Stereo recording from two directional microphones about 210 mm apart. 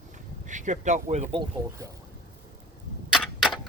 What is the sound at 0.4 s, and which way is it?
Speech, 35° right (ahead or behind).